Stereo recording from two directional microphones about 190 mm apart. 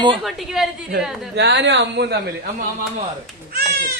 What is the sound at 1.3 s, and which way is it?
Speech, 65° right (ahead or behind).